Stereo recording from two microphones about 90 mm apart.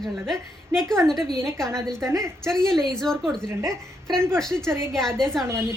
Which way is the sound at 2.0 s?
35° right (ahead or behind).